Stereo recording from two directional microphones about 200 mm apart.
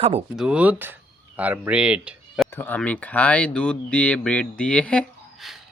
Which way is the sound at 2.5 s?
10° left (ahead or behind).